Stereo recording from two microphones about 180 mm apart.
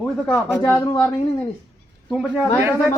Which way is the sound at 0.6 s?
15° left (ahead or behind).